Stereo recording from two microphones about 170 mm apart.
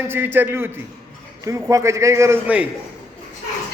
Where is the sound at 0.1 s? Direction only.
10° right (ahead or behind).